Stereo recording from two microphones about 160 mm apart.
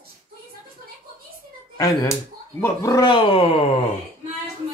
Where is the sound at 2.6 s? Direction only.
20° left (ahead or behind); by 3.6 s 35° left (ahead or behind).